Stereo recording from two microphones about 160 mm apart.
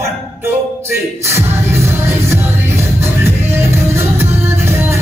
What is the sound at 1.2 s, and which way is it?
Music, 15° right (ahead or behind).